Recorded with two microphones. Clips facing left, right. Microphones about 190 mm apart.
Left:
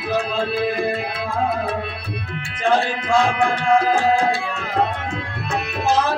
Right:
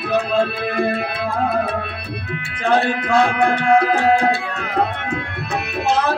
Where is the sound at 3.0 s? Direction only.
60° right (ahead or behind).